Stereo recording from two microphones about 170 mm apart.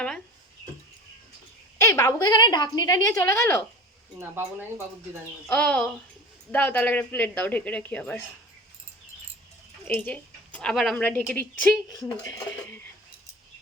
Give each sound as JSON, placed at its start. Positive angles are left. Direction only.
{"t": 1.8, "sound": "a woman's voice", "side_deg": 15}
{"t": 5.5, "sound": "a woman's voice", "side_deg": 10}
{"t": 9.8, "sound": "a woman's voice", "side_deg": 10}
{"t": 11.9, "sound": "a woman's voice", "side_deg": 20}